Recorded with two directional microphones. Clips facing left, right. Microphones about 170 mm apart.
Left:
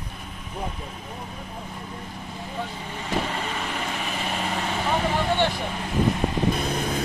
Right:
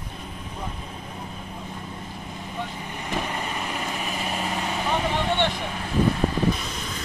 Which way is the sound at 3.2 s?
15° right (ahead or behind).